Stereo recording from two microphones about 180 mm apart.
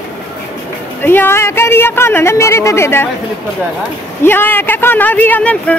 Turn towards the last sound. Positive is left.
turn(degrees=5)  # may be behind; listen again after turning